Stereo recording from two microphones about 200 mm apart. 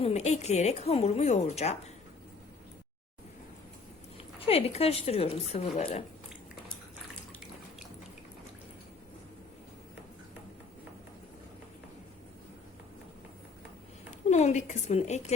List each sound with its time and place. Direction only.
0.0 s speech: 35° left (ahead or behind)
4.2 s speech: 30° left (ahead or behind)
14.1 s speech: 35° left (ahead or behind)